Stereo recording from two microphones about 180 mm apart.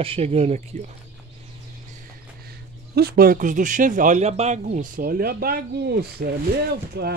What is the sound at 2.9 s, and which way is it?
Speech, 55° right (ahead or behind).